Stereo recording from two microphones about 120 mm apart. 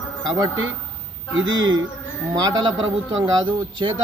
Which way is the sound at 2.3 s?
35° right (ahead or behind).